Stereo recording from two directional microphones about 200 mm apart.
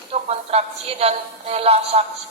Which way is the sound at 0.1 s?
30° right (ahead or behind).